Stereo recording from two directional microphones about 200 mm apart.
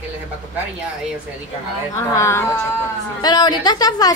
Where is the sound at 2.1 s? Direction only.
15° left (ahead or behind).